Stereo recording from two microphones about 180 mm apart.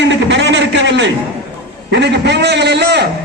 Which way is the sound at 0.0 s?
80° right.